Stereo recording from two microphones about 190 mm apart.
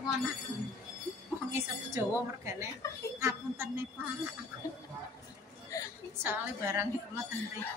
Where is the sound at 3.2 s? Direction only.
15° right (ahead or behind).